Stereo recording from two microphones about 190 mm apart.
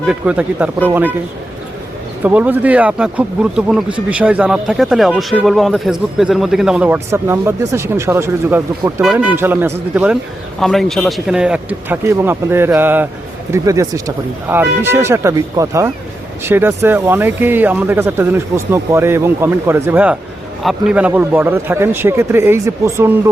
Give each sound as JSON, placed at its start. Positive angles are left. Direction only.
{"t": 0.0, "sound": "speech", "side_deg": -5}
{"t": 2.2, "sound": "speech", "side_deg": -10}